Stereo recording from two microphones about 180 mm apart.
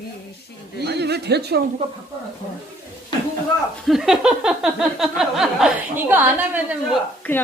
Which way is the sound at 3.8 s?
Centre (ahead or behind).